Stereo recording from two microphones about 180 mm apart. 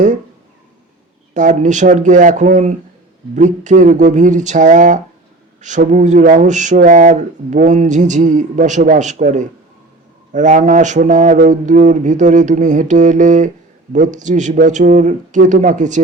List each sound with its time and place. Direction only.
1.3 s speech: 45° right (ahead or behind)